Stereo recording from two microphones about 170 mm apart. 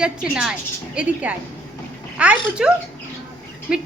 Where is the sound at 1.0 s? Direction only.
5° right (ahead or behind).